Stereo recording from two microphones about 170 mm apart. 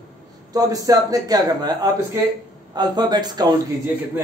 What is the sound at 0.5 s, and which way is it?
Speech, 20° right (ahead or behind).